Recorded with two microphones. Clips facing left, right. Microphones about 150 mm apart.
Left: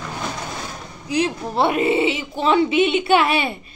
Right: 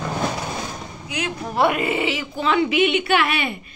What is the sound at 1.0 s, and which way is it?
Speech, 30° left (ahead or behind).